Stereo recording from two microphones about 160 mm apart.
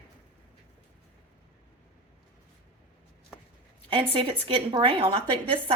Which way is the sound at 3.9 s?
35° right (ahead or behind).